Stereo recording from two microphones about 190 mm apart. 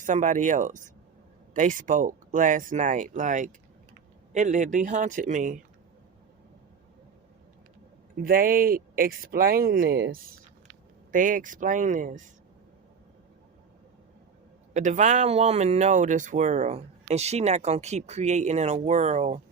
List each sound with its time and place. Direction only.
0.0 s speech: 40° right (ahead or behind)
8.2 s speech: 50° right (ahead or behind)
14.7 s speech: 40° right (ahead or behind)